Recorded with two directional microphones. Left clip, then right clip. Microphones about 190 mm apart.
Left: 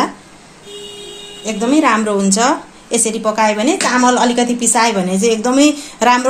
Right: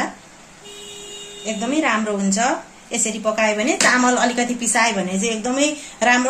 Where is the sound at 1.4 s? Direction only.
30° left (ahead or behind).